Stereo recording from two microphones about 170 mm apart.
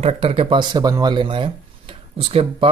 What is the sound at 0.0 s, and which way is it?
Speech, 35° right (ahead or behind).